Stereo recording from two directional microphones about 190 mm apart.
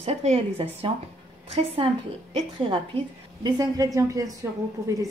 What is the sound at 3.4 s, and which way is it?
A woman's voice, 20° right (ahead or behind).